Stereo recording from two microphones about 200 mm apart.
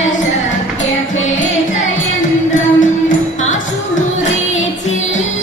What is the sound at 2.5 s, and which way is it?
Music, 40° left (ahead or behind).